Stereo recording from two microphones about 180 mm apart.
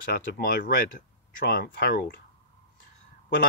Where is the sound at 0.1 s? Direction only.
55° left (ahead or behind).